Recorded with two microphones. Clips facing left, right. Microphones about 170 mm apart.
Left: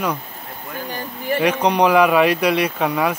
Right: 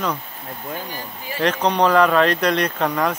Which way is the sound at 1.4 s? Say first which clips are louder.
Left 1 dB; 10° left (ahead or behind).